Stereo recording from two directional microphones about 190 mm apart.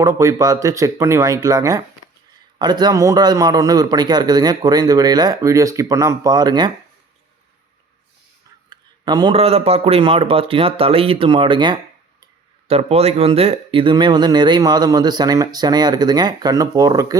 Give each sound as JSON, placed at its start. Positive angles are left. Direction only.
{"t": 0.0, "sound": "speech", "side_deg": -15}
{"t": 8.7, "sound": "speech", "side_deg": -20}